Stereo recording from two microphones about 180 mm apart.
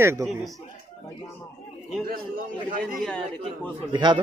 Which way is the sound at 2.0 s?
50° right (ahead or behind).